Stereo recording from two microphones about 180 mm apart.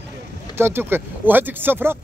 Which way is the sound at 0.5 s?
10° right (ahead or behind).